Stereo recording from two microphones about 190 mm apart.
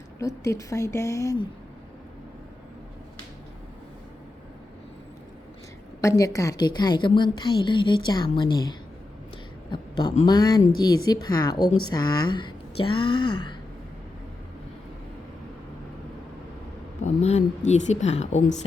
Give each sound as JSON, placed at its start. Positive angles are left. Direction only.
{"t": 0.2, "sound": "a woman's voice", "side_deg": 15}
{"t": 6.0, "sound": "a woman's voice", "side_deg": 15}
{"t": 9.7, "sound": "a sound", "side_deg": 25}
{"t": 10.2, "sound": "a woman's voice", "side_deg": 20}
{"t": 17.0, "sound": "speech", "side_deg": 35}